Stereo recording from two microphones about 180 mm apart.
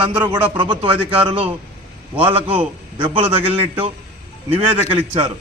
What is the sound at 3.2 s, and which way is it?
Speech, 10° right (ahead or behind).